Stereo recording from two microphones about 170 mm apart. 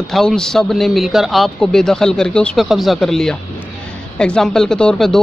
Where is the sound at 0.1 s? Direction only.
Centre (ahead or behind).